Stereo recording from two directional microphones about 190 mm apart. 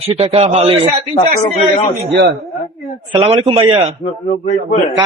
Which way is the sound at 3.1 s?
30° right (ahead or behind).